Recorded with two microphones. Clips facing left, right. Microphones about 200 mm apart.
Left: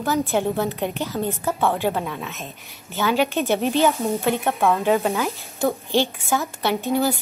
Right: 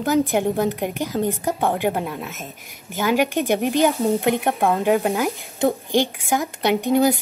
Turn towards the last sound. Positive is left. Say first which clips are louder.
# right 4 dB
turn(degrees=-15)  # may be behind; listen again after turning